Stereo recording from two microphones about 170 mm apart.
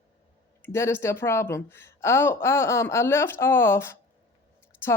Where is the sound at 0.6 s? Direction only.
15° left (ahead or behind).